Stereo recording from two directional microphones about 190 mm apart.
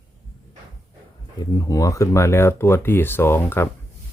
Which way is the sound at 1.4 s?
20° left (ahead or behind).